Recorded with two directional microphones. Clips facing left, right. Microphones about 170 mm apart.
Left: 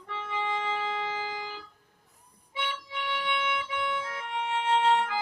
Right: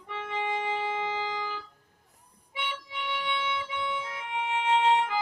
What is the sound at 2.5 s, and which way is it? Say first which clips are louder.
Harmonica: left 1 dB; 20° right (ahead or behind).